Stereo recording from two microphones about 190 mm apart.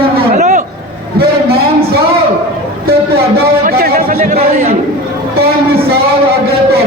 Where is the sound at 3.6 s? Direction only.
50° right (ahead or behind).